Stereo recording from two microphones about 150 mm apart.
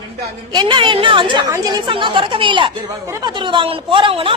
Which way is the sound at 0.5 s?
30° right (ahead or behind).